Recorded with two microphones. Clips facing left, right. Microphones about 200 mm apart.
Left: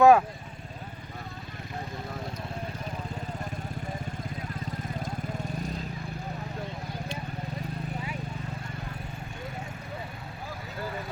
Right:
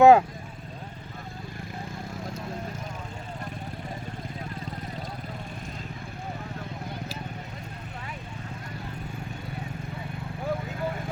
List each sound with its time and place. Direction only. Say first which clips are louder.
0.0 s speech: right 3 dB; 25° right (ahead or behind)